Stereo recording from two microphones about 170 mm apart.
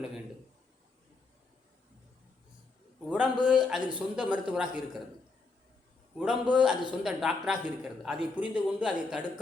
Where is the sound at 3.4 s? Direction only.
5° right (ahead or behind).